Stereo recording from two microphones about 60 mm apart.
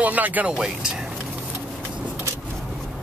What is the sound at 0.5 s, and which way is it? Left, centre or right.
Speech, centre.